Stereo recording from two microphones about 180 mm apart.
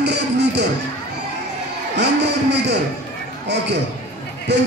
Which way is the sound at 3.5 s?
70° right (ahead or behind).